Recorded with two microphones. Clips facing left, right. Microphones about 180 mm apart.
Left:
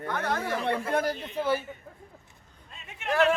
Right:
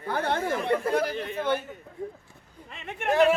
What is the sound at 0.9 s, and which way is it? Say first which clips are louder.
Speech: right 1 dB; 50° left (ahead or behind).